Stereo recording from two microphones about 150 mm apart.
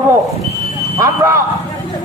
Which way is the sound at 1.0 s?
20° right (ahead or behind).